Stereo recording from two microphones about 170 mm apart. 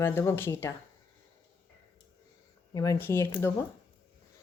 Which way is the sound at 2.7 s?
15° left (ahead or behind).